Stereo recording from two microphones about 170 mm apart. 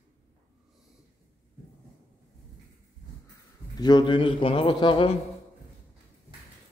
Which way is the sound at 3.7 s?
25° left (ahead or behind).